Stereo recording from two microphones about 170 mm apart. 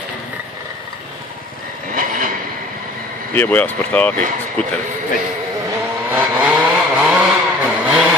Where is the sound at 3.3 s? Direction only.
10° left (ahead or behind).